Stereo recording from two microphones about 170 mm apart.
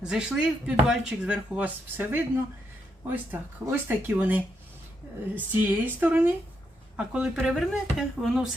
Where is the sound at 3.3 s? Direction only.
10° right (ahead or behind).